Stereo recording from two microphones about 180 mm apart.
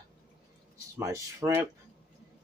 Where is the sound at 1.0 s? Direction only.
15° right (ahead or behind).